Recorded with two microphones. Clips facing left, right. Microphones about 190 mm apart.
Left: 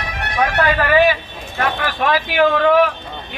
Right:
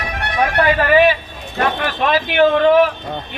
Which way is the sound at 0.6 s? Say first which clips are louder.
Right 2 dB; 20° right (ahead or behind).